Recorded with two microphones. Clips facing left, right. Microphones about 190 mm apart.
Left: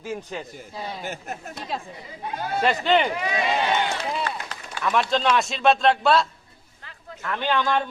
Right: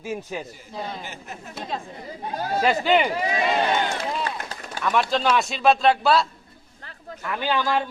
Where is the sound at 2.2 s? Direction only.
40° right (ahead or behind).